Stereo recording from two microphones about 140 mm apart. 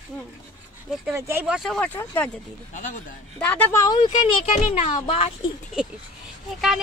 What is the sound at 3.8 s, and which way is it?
Speech, 30° left (ahead or behind).